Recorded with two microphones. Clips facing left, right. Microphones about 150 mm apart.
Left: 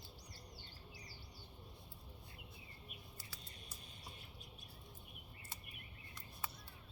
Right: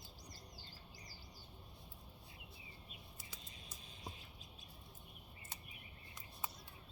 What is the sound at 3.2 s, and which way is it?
Bird, 20° right (ahead or behind).